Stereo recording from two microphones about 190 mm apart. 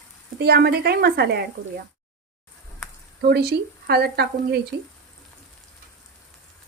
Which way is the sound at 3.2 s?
55° right (ahead or behind).